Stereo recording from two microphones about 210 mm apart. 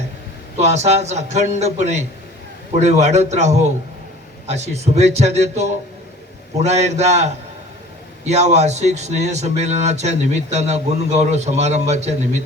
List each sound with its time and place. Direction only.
0.6 s speech: 30° right (ahead or behind)
8.3 s speech: 30° right (ahead or behind)